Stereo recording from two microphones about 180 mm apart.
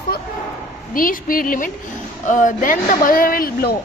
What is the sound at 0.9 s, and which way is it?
A woman's voice, 50° left (ahead or behind).